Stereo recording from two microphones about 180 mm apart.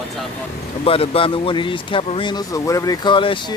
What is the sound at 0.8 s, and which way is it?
Speech, 30° left (ahead or behind).